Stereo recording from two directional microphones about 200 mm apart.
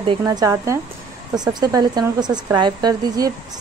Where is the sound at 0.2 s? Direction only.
15° right (ahead or behind).